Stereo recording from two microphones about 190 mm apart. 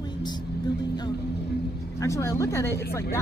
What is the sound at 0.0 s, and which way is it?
Music, 20° left (ahead or behind).